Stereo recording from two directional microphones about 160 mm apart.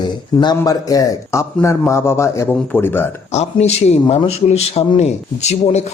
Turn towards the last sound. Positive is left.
turn(degrees=45)  # may be behind; listen again after turning